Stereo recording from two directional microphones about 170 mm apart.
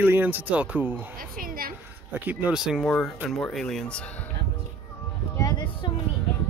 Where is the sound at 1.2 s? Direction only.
55° right (ahead or behind).